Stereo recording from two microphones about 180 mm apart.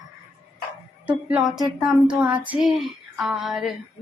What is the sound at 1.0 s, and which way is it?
Speech, 5° right (ahead or behind).